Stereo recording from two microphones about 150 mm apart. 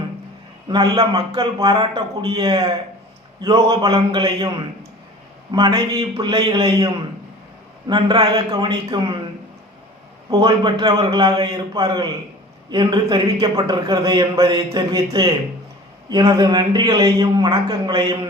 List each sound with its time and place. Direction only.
0.7 s a man's voice: 25° right (ahead or behind)
5.5 s a man's voice: 30° right (ahead or behind)
10.2 s a man's voice: 25° right (ahead or behind)